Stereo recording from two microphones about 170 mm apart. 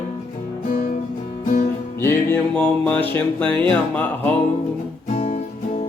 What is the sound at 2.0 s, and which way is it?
Music, 10° left (ahead or behind).